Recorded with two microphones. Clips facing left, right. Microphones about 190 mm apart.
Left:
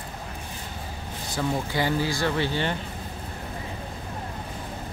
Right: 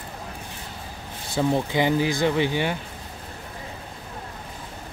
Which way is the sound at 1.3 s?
20° right (ahead or behind).